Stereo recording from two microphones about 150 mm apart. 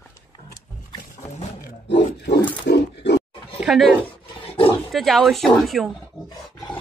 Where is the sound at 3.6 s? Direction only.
Centre (ahead or behind).